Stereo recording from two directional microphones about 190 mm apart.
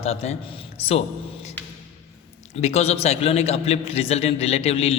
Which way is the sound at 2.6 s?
35° left (ahead or behind).